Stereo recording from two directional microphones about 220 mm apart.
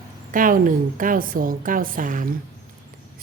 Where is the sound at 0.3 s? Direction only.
40° right (ahead or behind).